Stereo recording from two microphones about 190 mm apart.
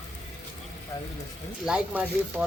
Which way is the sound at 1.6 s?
5° right (ahead or behind).